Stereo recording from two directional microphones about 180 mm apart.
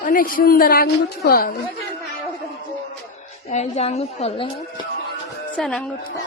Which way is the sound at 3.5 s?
40° left (ahead or behind).